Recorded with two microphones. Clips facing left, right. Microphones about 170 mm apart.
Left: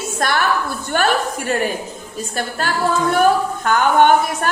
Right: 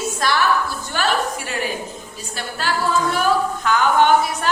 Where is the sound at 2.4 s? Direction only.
50° left (ahead or behind).